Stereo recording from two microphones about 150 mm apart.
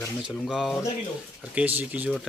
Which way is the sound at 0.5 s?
Centre (ahead or behind).